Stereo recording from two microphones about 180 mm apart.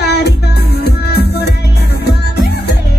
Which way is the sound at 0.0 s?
65° left (ahead or behind).